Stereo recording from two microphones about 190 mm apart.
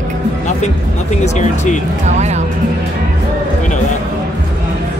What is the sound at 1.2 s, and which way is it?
Speech, 40° left (ahead or behind).